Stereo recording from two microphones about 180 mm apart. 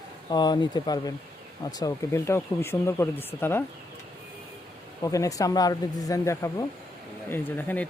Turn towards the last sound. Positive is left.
turn(degrees=10)  # may be behind; listen again after turning